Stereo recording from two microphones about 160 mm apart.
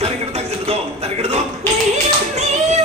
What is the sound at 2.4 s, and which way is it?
Music, 45° right (ahead or behind).